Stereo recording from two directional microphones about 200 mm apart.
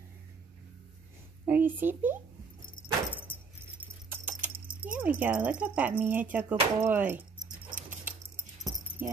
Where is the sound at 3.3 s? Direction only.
10° left (ahead or behind).